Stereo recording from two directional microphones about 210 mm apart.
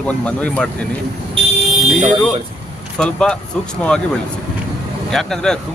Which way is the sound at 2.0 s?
5° right (ahead or behind).